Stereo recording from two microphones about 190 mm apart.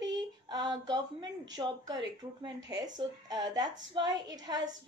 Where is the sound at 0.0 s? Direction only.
20° right (ahead or behind).